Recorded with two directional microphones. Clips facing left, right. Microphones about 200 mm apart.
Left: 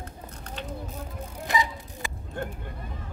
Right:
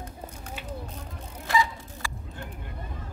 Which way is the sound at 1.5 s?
20° left (ahead or behind).